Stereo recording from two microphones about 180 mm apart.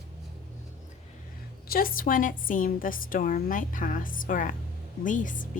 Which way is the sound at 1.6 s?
55° left (ahead or behind).